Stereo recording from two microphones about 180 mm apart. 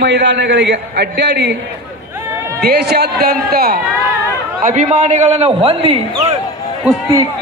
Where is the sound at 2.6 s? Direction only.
60° right (ahead or behind).